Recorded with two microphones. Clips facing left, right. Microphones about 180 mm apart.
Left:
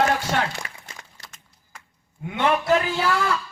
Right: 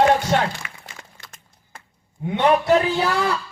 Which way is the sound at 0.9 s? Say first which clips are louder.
Right 1 dB; 35° left (ahead or behind).